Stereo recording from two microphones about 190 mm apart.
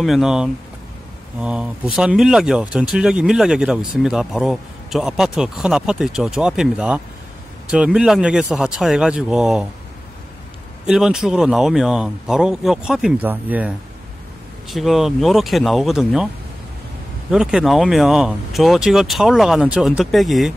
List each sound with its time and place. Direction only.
0.0 s speech: centre (ahead or behind)
10.9 s speech: 5° right (ahead or behind)
17.3 s speech: 5° right (ahead or behind)